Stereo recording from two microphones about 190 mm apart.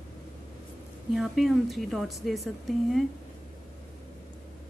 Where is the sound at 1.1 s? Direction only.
Centre (ahead or behind).